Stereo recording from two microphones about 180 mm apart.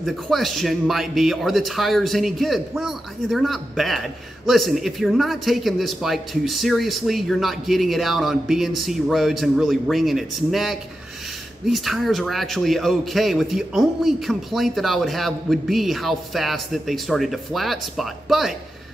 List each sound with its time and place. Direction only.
0.0 s speech: centre (ahead or behind)